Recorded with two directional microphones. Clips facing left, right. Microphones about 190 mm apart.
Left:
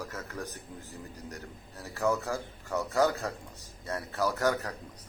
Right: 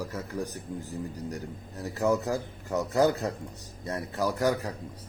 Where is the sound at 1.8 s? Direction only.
15° right (ahead or behind).